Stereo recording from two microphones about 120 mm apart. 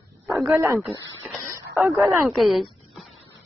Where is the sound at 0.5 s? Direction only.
25° right (ahead or behind).